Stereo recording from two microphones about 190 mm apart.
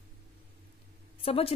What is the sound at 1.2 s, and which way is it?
Speech, 30° left (ahead or behind).